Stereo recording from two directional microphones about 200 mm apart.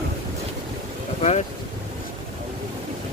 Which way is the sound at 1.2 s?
35° left (ahead or behind).